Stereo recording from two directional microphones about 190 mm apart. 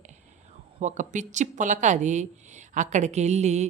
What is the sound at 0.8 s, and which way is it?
Speech, 40° right (ahead or behind).